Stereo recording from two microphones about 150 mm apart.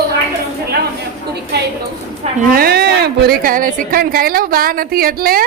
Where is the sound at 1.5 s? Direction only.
90° right.